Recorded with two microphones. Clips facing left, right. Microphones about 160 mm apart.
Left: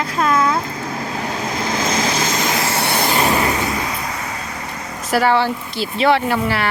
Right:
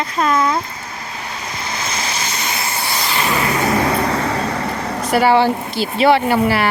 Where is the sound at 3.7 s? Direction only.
60° right (ahead or behind).